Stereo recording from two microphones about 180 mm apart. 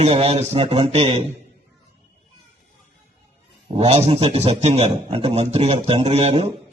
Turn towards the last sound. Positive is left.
turn(degrees=-35)  # may be behind; listen again after turning